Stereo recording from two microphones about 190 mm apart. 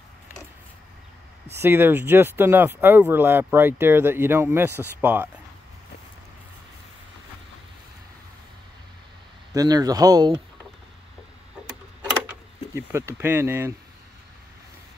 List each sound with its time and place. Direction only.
1.5 s speech: 10° right (ahead or behind)
9.5 s speech: 20° right (ahead or behind)
12.3 s speech: 15° right (ahead or behind)